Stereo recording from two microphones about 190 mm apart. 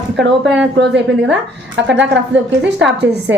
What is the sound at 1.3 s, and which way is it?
A woman's voice, 70° right (ahead or behind).